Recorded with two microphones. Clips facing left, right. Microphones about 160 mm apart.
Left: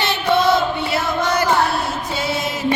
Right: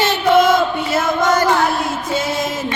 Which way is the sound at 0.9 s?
45° right (ahead or behind).